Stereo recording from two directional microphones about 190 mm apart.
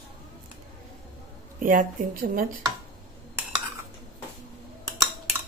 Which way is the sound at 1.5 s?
45° right (ahead or behind).